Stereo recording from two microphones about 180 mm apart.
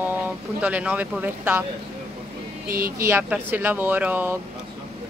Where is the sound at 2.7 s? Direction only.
55° right (ahead or behind).